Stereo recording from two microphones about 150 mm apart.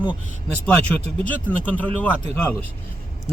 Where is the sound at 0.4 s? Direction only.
5° left (ahead or behind).